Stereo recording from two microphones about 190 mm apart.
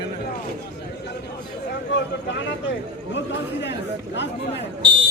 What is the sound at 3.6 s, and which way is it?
Chatter, 65° left (ahead or behind).